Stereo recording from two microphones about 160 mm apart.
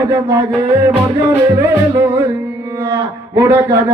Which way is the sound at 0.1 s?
15° right (ahead or behind).